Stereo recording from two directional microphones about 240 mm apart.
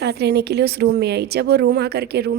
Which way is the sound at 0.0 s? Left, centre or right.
Right.